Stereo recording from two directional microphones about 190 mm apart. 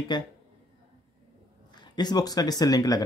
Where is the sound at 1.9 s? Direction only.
20° left (ahead or behind).